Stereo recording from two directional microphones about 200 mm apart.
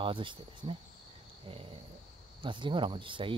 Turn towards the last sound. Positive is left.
turn(degrees=-25)  # may be behind; listen again after turning